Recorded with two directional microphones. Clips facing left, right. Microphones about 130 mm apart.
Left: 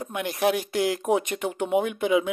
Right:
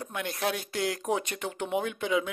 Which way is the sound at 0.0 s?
15° left (ahead or behind).